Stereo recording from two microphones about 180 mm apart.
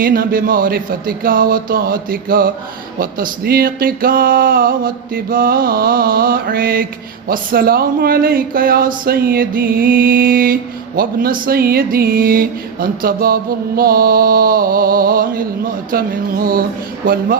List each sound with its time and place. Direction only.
0.0 s music: 55° right (ahead or behind)
7.3 s speech: 55° right (ahead or behind)
9.0 s music: 55° right (ahead or behind)